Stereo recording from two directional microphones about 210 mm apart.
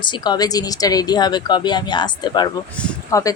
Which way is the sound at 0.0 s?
20° left (ahead or behind).